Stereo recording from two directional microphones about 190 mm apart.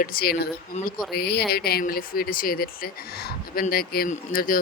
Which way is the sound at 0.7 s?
35° left (ahead or behind).